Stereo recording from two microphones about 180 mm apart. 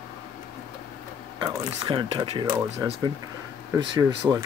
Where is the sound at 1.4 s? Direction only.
25° right (ahead or behind).